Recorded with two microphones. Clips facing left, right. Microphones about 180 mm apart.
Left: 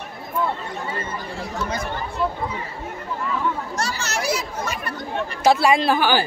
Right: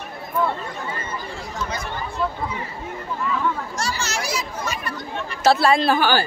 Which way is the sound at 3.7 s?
60° left (ahead or behind).